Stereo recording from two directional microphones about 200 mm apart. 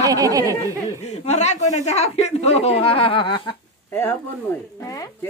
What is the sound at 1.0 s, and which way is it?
Speech, 35° left (ahead or behind).